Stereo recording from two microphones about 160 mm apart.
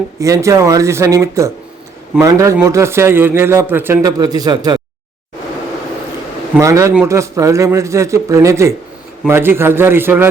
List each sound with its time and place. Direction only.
0.2 s a man's voice: 20° right (ahead or behind)
6.6 s a man's voice: 20° right (ahead or behind)